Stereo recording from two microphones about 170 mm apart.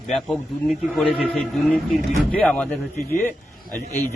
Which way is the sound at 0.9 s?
Centre (ahead or behind).